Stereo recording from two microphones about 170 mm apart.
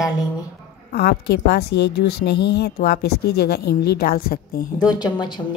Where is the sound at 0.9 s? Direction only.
75° left (ahead or behind).